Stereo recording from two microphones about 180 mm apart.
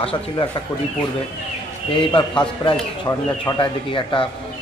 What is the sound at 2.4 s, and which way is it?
Speech, 30° left (ahead or behind).